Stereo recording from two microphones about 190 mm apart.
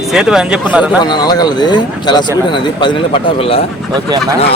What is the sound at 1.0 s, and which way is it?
Speech, 20° left (ahead or behind).